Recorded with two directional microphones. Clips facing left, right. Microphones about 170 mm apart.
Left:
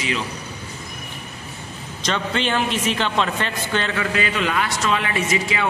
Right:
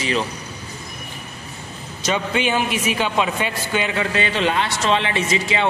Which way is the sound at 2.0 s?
10° right (ahead or behind).